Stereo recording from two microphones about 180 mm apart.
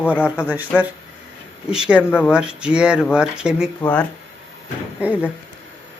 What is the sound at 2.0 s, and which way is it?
Speech, 10° left (ahead or behind).